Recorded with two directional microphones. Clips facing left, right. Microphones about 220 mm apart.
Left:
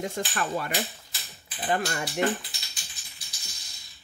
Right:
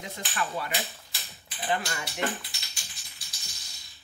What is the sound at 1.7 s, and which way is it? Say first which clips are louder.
Speech: left 3 dB; 45° left (ahead or behind).